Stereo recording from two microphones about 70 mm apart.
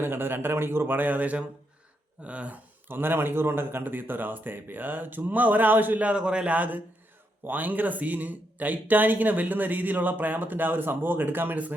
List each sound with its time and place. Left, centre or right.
0.0 s speech: right
2.9 s speech: right